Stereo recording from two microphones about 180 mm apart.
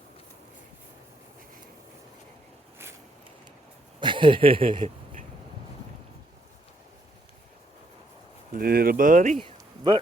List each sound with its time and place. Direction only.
4.0 s speech: 25° right (ahead or behind)
8.5 s speech: 55° right (ahead or behind)
9.4 s a sound: 25° right (ahead or behind)